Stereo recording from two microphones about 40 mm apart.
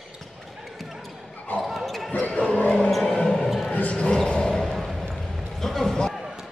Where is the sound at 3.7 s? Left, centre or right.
Left.